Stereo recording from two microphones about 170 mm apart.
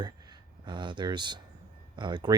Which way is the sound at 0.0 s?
25° right (ahead or behind).